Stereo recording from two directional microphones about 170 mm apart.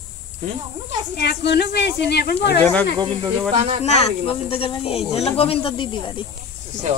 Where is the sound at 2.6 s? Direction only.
10° left (ahead or behind).